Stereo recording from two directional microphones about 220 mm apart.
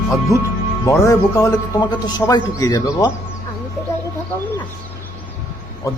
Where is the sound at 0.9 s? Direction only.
15° left (ahead or behind).